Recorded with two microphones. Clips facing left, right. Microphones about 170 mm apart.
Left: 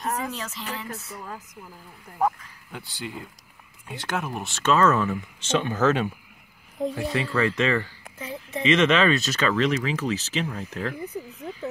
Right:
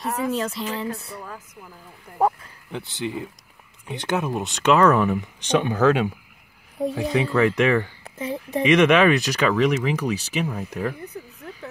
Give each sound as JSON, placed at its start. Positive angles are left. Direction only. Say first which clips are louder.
{"t": 0.3, "sound": "speech", "louder": "right 8 dB", "side_deg": -35}
{"t": 2.1, "sound": "speech", "louder": "right 3 dB", "side_deg": -25}
{"t": 8.0, "sound": "speech", "louder": "right 7 dB", "side_deg": -35}
{"t": 8.6, "sound": "speech", "louder": "right 4 dB", "side_deg": -15}